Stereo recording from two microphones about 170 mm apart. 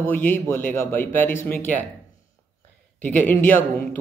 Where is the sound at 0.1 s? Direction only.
10° left (ahead or behind).